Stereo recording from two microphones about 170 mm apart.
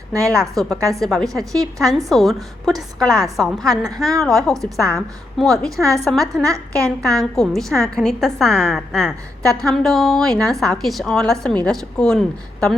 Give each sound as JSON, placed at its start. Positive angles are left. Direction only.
{"t": 0.1, "sound": "a woman's voice", "side_deg": -20}
{"t": 0.5, "sound": "a woman's voice", "side_deg": 0}
{"t": 6.4, "sound": "a woman's voice", "side_deg": -20}
{"t": 7.0, "sound": "a woman's voice", "side_deg": 0}